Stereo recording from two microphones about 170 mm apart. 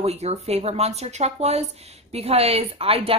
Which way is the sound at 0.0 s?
40° right (ahead or behind).